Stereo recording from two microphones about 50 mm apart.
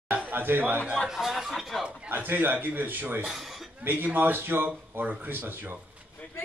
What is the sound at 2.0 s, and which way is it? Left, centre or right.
Speech, right.